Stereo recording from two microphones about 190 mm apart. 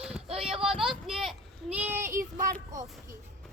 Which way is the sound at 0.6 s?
Centre (ahead or behind).